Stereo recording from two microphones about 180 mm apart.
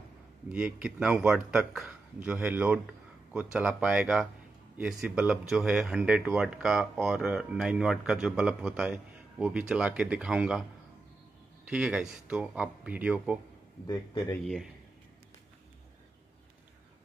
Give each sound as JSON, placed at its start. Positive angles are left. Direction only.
{"t": 0.5, "sound": "speech", "side_deg": -5}
{"t": 11.7, "sound": "speech", "side_deg": -5}
{"t": 13.8, "sound": "speech", "side_deg": 20}
{"t": 14.4, "sound": "speech", "side_deg": 0}